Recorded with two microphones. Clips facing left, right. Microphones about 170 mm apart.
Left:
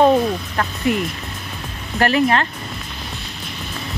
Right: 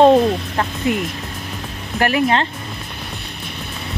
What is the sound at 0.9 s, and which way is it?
Speech, 15° right (ahead or behind).